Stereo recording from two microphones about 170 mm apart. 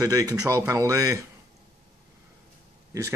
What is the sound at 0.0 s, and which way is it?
Speech, 20° right (ahead or behind).